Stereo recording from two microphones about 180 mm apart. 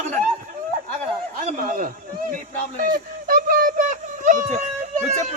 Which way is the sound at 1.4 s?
50° right (ahead or behind).